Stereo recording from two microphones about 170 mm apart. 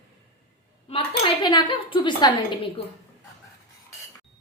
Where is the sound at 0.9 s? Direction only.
30° left (ahead or behind).